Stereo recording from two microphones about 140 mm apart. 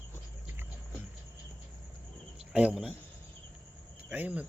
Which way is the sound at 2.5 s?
5° right (ahead or behind).